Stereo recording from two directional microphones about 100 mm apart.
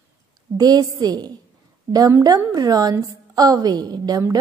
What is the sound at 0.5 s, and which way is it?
Speech, 40° right (ahead or behind).